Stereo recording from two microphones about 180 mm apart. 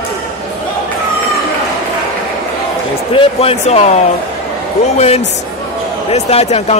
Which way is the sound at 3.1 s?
30° left (ahead or behind).